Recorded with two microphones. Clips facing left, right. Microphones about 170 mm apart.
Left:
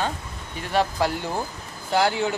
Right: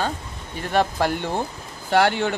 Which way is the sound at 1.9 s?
65° right (ahead or behind).